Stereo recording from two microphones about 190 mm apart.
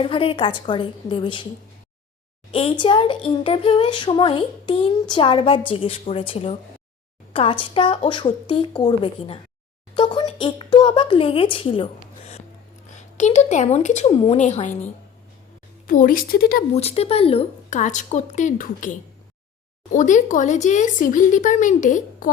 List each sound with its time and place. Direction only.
0.0 s speech: 30° left (ahead or behind)
2.5 s speech: 30° left (ahead or behind)
12.9 s speech: 40° left (ahead or behind)
15.9 s a woman's voice: 45° left (ahead or behind)
16.7 s speech: 35° left (ahead or behind)